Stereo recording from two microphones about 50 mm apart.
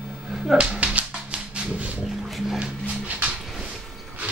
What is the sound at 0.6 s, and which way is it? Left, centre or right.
Music, right.